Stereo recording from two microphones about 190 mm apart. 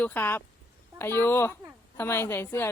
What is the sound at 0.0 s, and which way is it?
A woman's voice, 10° left (ahead or behind).